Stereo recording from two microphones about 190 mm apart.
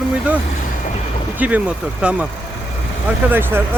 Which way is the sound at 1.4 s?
5° right (ahead or behind).